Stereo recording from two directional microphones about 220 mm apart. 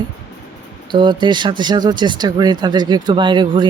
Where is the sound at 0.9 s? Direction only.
20° right (ahead or behind).